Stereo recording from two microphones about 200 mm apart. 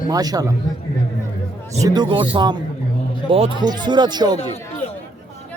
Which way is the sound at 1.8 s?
20° right (ahead or behind).